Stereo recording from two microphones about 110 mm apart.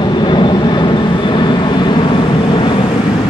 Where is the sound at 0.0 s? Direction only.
45° left (ahead or behind).